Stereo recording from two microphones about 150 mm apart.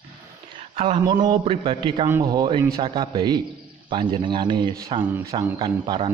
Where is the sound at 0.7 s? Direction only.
35° right (ahead or behind).